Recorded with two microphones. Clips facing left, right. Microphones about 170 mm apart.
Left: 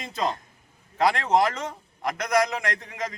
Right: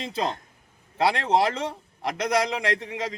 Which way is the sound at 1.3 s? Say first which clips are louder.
Even; 30° right (ahead or behind).